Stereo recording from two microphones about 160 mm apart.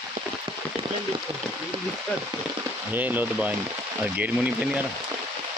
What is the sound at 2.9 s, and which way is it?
Speech, 10° right (ahead or behind).